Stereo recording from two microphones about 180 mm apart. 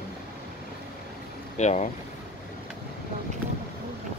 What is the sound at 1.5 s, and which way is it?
Speech, 40° left (ahead or behind).